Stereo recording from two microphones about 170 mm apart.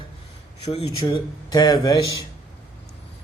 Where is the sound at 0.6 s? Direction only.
35° left (ahead or behind).